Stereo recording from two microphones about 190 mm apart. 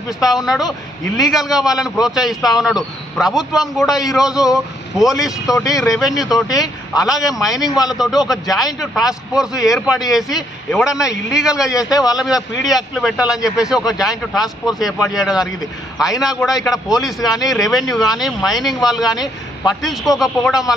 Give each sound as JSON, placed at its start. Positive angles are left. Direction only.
{"t": 0.2, "sound": "a man's voice", "side_deg": 0}
{"t": 5.5, "sound": "speech", "side_deg": 20}
{"t": 6.1, "sound": "a man's voice", "side_deg": 0}
{"t": 11.7, "sound": "a man's voice", "side_deg": 20}
{"t": 12.6, "sound": "a man's voice", "side_deg": 0}